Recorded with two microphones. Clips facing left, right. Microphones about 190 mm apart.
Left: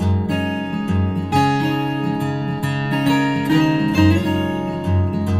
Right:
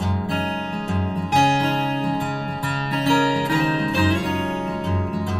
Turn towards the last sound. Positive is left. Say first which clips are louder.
# left 6 dB
turn(degrees=25)  # may be behind; listen again after turning